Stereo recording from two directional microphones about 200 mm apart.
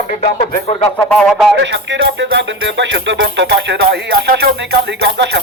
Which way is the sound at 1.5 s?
60° right (ahead or behind).